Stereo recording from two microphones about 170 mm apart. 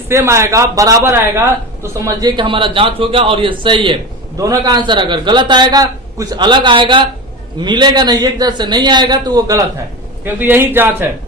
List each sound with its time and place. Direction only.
0.1 s a man's voice: 15° right (ahead or behind)
2.3 s a man's voice: 30° right (ahead or behind); by 10.8 s 10° right (ahead or behind)